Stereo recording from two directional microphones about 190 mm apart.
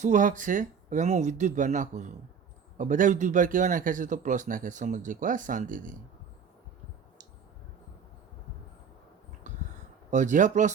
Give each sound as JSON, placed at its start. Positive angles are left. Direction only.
{"t": 0.0, "sound": "a man's voice", "side_deg": -40}
{"t": 10.1, "sound": "speech", "side_deg": -40}